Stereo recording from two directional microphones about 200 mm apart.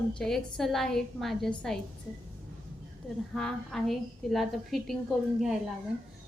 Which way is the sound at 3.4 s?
5° left (ahead or behind).